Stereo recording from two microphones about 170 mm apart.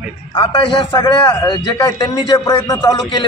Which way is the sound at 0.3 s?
30° left (ahead or behind).